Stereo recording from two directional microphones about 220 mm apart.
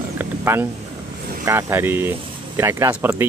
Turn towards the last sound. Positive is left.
turn(degrees=-10)  # may be behind; listen again after turning